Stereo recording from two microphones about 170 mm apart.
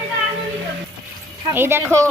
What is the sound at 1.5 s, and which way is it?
Speech, 15° right (ahead or behind).